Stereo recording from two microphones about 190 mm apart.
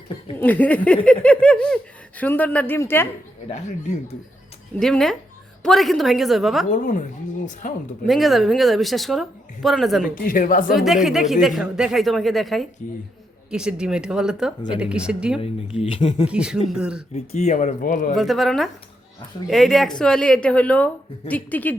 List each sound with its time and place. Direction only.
0.3 s speech: 10° left (ahead or behind)
3.5 s speech: 35° left (ahead or behind)
4.8 s speech: centre (ahead or behind)
6.7 s speech: 45° left (ahead or behind)
8.0 s speech: centre (ahead or behind)
10.2 s speech: 50° left (ahead or behind)
10.8 s speech: centre (ahead or behind)
15.4 s speech: 30° left (ahead or behind)
16.3 s speech: 5° right (ahead or behind)
17.2 s speech: 35° left (ahead or behind)
18.1 s speech: centre (ahead or behind)